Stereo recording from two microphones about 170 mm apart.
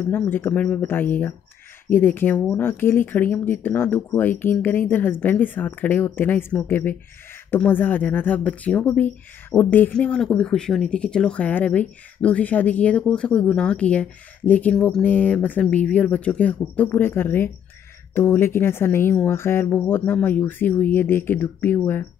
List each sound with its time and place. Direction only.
0.1 s speech: 10° left (ahead or behind)